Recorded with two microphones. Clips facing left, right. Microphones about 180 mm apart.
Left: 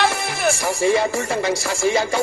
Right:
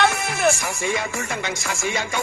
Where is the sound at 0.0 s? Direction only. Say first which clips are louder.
Even; 35° left (ahead or behind).